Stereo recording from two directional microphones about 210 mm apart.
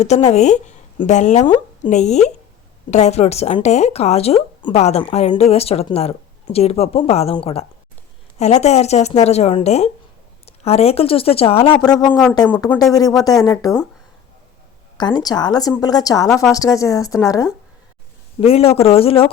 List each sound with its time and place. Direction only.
0.0 s speech: 30° left (ahead or behind)
12.4 s speech: 5° left (ahead or behind)
14.9 s speech: 20° left (ahead or behind)
18.3 s speech: 30° left (ahead or behind)